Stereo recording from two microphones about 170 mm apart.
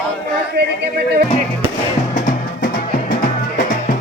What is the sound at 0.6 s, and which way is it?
Speech, 75° right (ahead or behind).